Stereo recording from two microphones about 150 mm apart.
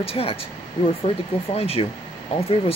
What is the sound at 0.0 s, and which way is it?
Speech, 40° left (ahead or behind).